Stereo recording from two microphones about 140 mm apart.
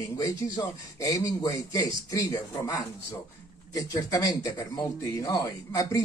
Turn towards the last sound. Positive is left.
turn(degrees=25)  # may be behind; listen again after turning